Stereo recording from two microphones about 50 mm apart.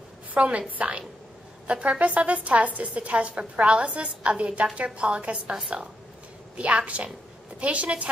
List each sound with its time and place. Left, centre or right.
0.3 s a woman's voice: right